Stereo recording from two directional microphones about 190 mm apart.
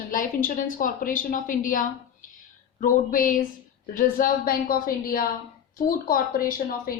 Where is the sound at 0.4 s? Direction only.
45° left (ahead or behind).